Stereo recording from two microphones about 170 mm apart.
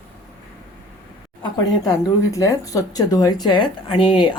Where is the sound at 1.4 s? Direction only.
20° left (ahead or behind).